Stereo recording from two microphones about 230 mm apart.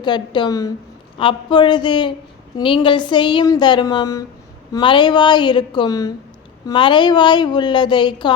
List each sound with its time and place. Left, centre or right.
0.0 s a woman's voice: centre